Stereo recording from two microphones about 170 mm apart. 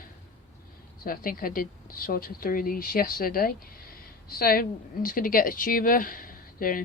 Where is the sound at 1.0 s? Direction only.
55° left (ahead or behind).